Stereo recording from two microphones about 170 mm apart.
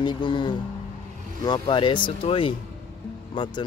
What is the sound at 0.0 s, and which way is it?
Speech, 30° left (ahead or behind).